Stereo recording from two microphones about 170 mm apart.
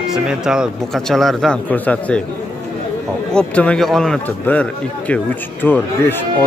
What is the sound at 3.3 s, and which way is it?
Speech, 5° left (ahead or behind).